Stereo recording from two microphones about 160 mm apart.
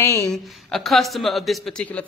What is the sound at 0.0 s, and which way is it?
Speech, 20° left (ahead or behind).